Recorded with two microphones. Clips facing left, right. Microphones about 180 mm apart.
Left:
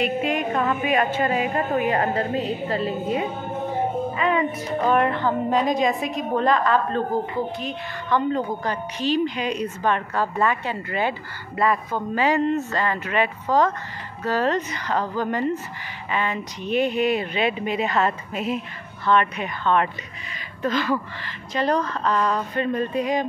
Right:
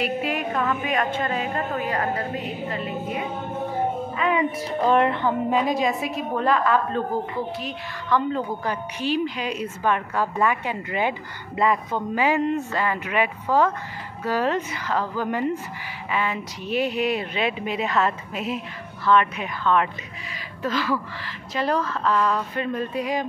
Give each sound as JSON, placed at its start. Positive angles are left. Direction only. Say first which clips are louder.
{"t": 0.0, "sound": "a woman's voice", "louder": "left 2 dB", "side_deg": -5}
{"t": 4.2, "sound": "speech", "louder": "even", "side_deg": 0}
{"t": 4.7, "sound": "speech", "louder": "right 1 dB", "side_deg": -25}
{"t": 5.5, "sound": "a woman's voice", "louder": "left 3 dB", "side_deg": -5}